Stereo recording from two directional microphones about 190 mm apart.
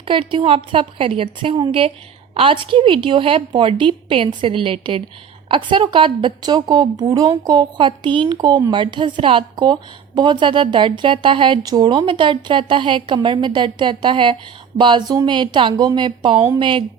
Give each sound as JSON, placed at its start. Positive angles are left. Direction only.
{"t": 0.0, "sound": "a woman's voice", "side_deg": -25}